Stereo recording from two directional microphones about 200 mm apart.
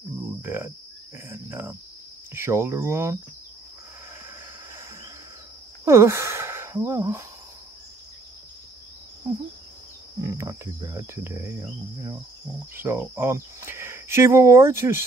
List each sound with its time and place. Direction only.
0.4 s speech: 10° right (ahead or behind)
5.9 s speech: 15° right (ahead or behind)
10.2 s speech: 15° right (ahead or behind)
12.7 s speech: 10° right (ahead or behind)